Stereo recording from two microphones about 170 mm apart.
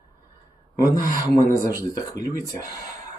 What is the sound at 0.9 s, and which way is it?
Speech, 50° right (ahead or behind).